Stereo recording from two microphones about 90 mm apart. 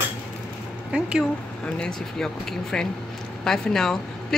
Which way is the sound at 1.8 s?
5° left (ahead or behind).